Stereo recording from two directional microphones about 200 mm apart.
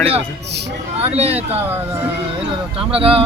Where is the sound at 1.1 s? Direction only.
30° right (ahead or behind).